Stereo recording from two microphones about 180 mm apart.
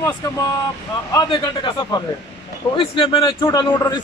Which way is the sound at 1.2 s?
30° left (ahead or behind).